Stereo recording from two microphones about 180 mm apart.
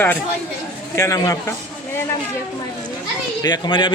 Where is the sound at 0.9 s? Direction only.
20° left (ahead or behind).